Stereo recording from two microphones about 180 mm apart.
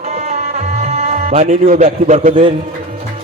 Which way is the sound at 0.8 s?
35° right (ahead or behind).